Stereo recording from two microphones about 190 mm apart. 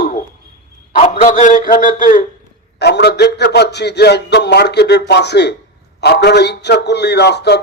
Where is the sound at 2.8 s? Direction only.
60° left (ahead or behind).